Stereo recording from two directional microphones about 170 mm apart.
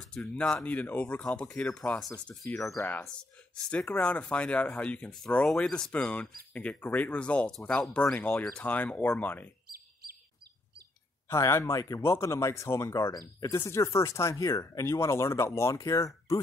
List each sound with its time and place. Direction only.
0.0 s speech: 5° left (ahead or behind)
11.2 s speech: 15° left (ahead or behind)